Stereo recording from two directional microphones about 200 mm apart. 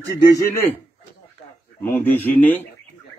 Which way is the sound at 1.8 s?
10° left (ahead or behind).